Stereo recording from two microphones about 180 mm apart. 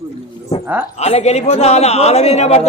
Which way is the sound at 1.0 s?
35° left (ahead or behind).